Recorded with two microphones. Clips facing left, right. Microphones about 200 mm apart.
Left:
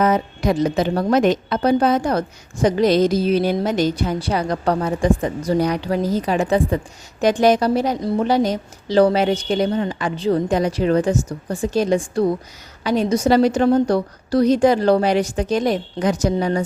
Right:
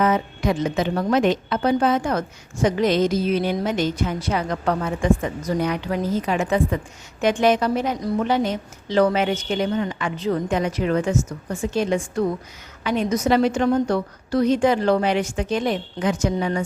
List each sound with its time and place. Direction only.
0.0 s a woman's voice: 40° left (ahead or behind)